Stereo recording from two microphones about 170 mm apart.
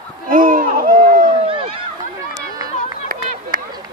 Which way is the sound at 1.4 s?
30° right (ahead or behind).